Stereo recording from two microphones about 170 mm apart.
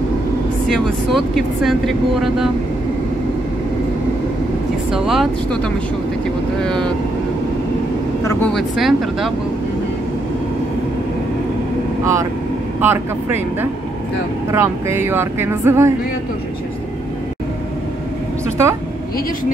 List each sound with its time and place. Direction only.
0.7 s speech: centre (ahead or behind)
4.9 s speech: centre (ahead or behind)
6.6 s speech: 5° left (ahead or behind)
8.2 s speech: 20° left (ahead or behind)
8.5 s speech: centre (ahead or behind)
12.0 s speech: 20° right (ahead or behind)